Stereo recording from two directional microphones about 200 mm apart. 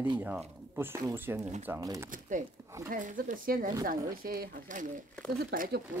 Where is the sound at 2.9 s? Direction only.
40° right (ahead or behind).